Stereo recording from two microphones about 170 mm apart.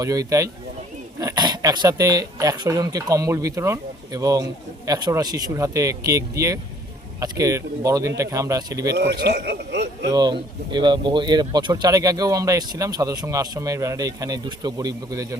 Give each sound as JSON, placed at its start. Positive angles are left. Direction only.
{"t": 0.0, "sound": "speech", "side_deg": -20}
{"t": 9.0, "sound": "a man's voice", "side_deg": -75}
{"t": 10.1, "sound": "speech", "side_deg": -25}